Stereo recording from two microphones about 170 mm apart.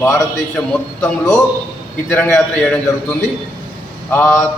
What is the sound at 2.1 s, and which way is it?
Speech, 10° left (ahead or behind).